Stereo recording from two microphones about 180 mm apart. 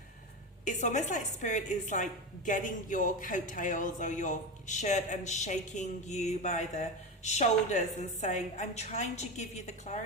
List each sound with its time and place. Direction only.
0.6 s a man's voice: 45° left (ahead or behind)